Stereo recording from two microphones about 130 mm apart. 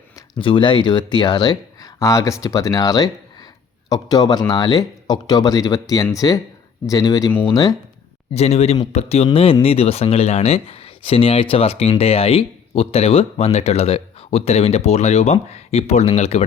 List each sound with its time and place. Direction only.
0.3 s speech: 40° left (ahead or behind)
8.3 s speech: 50° left (ahead or behind)